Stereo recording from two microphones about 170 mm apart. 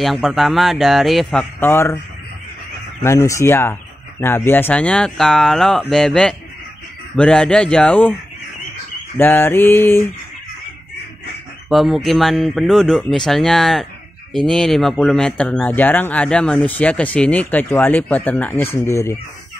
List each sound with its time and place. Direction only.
0.0 s speech: centre (ahead or behind)
3.0 s speech: 15° left (ahead or behind)
9.1 s speech: 10° left (ahead or behind)
11.7 s speech: centre (ahead or behind); by 19.1 s 15° left (ahead or behind)